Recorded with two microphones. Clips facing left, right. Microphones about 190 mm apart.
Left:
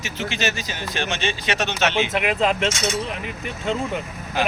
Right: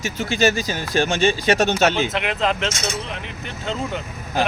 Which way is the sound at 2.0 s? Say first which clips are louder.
Left 1 dB; 5° left (ahead or behind).